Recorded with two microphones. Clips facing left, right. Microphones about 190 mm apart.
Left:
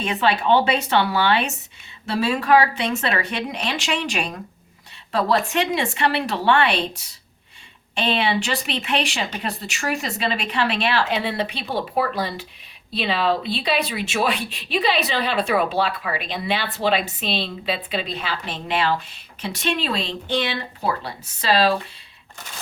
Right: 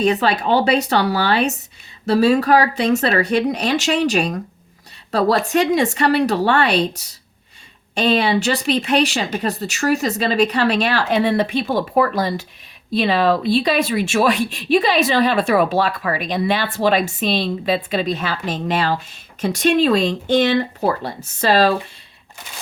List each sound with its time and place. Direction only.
0.0 s speech: 40° right (ahead or behind)